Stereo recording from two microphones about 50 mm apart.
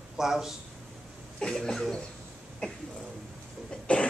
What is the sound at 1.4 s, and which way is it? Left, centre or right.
Speech, centre.